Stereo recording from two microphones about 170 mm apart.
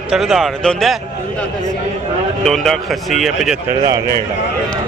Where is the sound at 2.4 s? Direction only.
Centre (ahead or behind).